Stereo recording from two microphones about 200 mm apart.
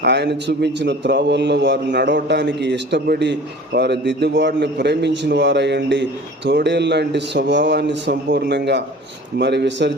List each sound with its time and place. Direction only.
0.0 s a man's voice: 60° right (ahead or behind)